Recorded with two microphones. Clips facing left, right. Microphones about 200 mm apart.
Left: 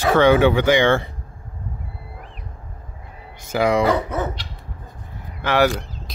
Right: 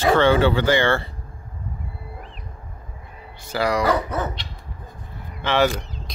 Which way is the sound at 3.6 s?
25° left (ahead or behind).